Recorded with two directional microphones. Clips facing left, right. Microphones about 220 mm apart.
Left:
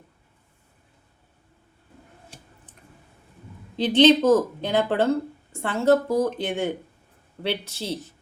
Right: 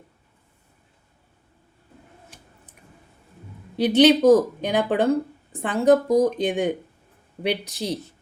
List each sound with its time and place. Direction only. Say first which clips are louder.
3.8 s speech: right 1 dB; 10° right (ahead or behind)